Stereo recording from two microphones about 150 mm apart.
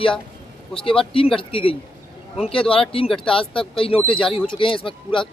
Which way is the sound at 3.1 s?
5° left (ahead or behind).